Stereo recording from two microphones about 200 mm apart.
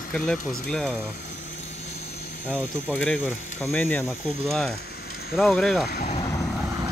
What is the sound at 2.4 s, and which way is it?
Speech, 5° left (ahead or behind).